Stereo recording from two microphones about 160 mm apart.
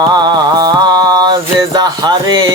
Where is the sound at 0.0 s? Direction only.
25° right (ahead or behind).